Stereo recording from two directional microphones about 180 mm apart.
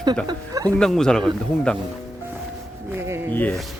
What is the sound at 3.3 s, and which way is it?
Speech, 10° left (ahead or behind).